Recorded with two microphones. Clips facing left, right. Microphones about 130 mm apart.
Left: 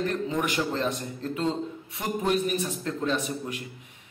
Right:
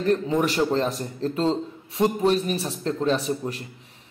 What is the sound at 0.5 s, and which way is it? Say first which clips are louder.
A man's voice: right 5 dB; 40° right (ahead or behind).